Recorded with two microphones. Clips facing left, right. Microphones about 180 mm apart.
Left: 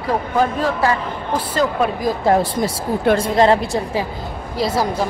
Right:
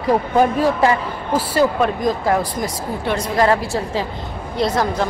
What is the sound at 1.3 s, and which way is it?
Speech, 10° right (ahead or behind).